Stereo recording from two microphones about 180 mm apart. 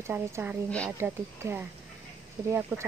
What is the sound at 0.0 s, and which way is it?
Speech, 10° right (ahead or behind).